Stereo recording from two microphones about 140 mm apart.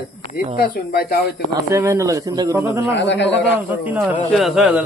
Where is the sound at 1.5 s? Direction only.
20° right (ahead or behind).